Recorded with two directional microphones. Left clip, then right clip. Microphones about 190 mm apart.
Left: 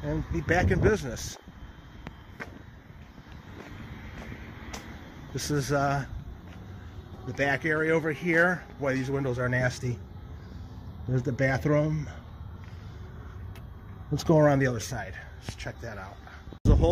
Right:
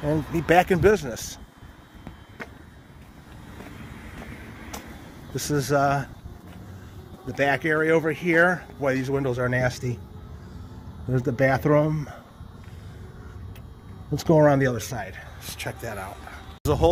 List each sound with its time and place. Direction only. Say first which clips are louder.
0.0 s speech: right 7 dB; 15° right (ahead or behind)
5.3 s speech: right 5 dB; 10° right (ahead or behind)
7.3 s speech: right 4 dB; 15° right (ahead or behind)
11.1 s speech: right 6 dB; 70° right (ahead or behind)
11.6 s speech: right 6 dB; 20° right (ahead or behind)
14.1 s speech: right 4 dB; centre (ahead or behind)